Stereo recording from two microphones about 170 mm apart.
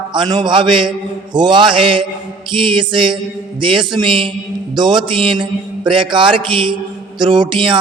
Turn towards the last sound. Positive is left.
turn(degrees=-30)  # may be behind; listen again after turning